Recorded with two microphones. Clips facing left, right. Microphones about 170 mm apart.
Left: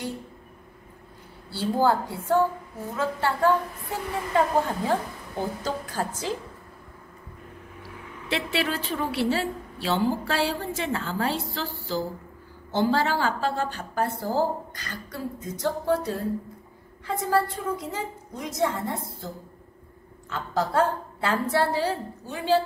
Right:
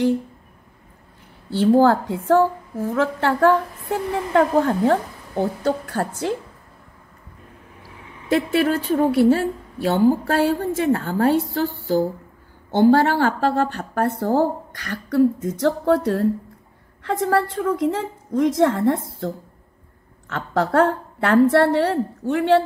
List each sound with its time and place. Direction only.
1.8 s a woman's voice: 80° right
2.9 s a woman's voice: 70° right (ahead or behind)
8.3 s a woman's voice: 50° right (ahead or behind); by 16.3 s 70° right (ahead or behind)
17.0 s a woman's voice: 85° right
20.2 s a woman's voice: 70° right (ahead or behind)